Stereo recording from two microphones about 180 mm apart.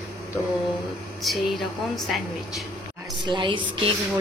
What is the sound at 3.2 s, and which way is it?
Music, 25° right (ahead or behind).